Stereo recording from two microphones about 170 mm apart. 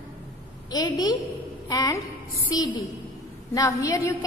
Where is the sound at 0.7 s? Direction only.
25° left (ahead or behind).